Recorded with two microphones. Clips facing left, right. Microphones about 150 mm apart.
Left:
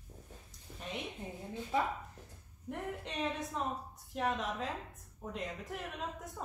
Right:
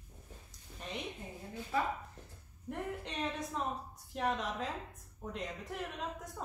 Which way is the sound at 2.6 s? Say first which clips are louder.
Right 1 dB; centre (ahead or behind).